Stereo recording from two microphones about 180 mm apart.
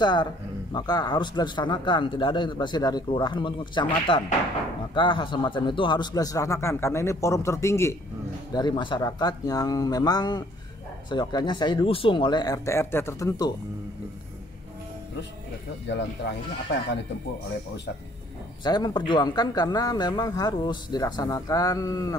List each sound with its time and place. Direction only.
0.0 s a man's voice: 25° left (ahead or behind)
18.6 s speech: 25° left (ahead or behind)